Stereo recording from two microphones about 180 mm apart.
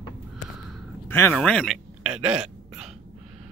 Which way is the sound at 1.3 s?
5° left (ahead or behind).